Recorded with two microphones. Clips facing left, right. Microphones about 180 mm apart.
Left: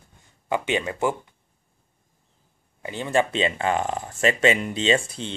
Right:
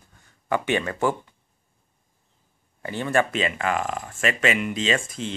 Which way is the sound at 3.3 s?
30° left (ahead or behind).